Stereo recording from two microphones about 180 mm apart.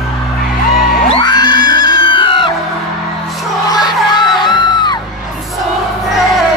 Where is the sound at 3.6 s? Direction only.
25° left (ahead or behind).